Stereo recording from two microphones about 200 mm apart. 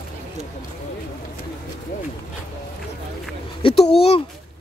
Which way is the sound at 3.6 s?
25° left (ahead or behind).